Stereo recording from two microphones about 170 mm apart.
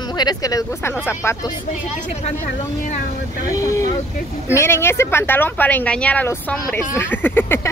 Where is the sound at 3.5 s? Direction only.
20° left (ahead or behind).